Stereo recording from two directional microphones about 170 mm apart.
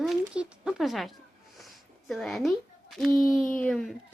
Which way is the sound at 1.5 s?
Centre (ahead or behind).